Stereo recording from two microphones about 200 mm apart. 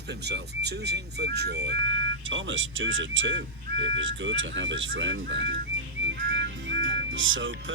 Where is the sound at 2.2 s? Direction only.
75° right (ahead or behind).